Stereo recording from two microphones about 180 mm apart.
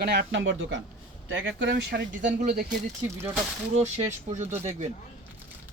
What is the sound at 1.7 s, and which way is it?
Speech, 50° right (ahead or behind).